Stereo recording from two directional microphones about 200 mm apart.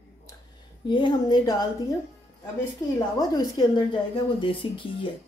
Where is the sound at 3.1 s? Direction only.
20° left (ahead or behind).